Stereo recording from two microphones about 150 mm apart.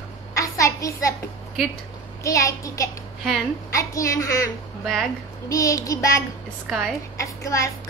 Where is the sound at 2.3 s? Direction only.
20° left (ahead or behind).